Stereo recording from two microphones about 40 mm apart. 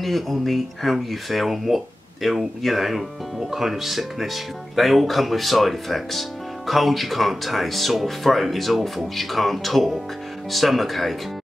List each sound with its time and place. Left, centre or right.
0.0 s speech: centre